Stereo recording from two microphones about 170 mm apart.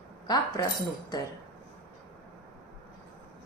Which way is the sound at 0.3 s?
25° left (ahead or behind).